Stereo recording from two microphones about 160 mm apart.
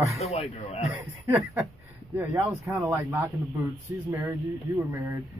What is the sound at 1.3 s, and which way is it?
A man's voice, 15° right (ahead or behind).